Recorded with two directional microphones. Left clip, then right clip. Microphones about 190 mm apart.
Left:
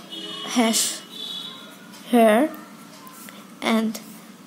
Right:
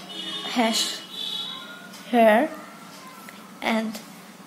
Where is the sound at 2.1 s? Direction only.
35° left (ahead or behind).